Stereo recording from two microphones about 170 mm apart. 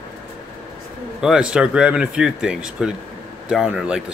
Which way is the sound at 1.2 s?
5° right (ahead or behind).